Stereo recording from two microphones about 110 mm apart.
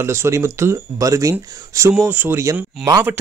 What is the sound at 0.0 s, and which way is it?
A man's voice, 25° right (ahead or behind).